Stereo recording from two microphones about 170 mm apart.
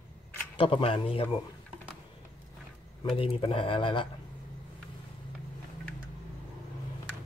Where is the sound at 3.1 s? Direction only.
30° left (ahead or behind).